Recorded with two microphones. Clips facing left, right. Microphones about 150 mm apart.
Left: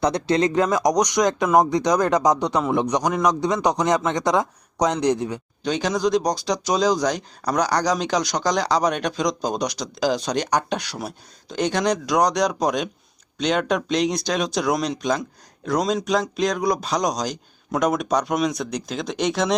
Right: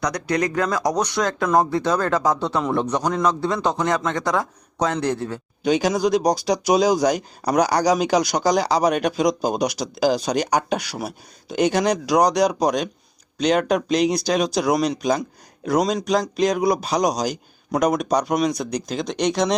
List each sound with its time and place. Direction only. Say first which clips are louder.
0.0 s a man's voice: left 3 dB; 25° left (ahead or behind)
5.6 s speech: right 3 dB; 10° right (ahead or behind)